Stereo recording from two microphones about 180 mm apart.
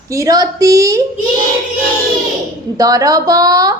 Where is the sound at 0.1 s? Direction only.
20° right (ahead or behind).